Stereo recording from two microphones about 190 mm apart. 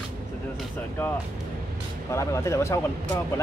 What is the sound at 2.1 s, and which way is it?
Speech, 15° left (ahead or behind).